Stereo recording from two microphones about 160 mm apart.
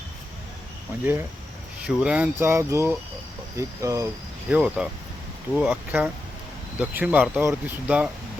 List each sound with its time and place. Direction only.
1.8 s speech: 5° right (ahead or behind)
4.4 s speech: 10° right (ahead or behind)